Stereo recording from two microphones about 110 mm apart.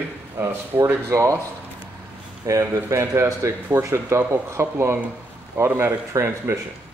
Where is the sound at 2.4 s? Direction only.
30° right (ahead or behind).